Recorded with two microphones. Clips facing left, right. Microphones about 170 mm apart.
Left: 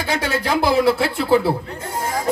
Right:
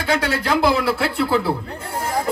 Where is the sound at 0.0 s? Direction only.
60° right (ahead or behind).